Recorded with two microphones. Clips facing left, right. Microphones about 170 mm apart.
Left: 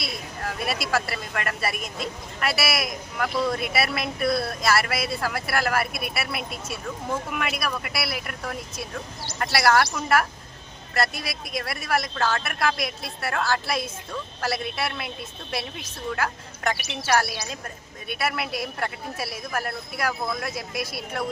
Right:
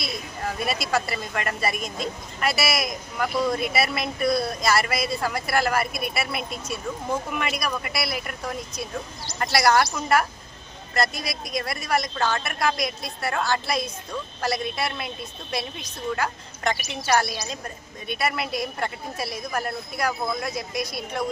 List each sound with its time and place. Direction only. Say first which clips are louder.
0.0 s speech: right 2 dB; centre (ahead or behind)
16.7 s a woman's voice: right 1 dB; 70° left (ahead or behind)
17.0 s speech: right 1 dB; 5° left (ahead or behind)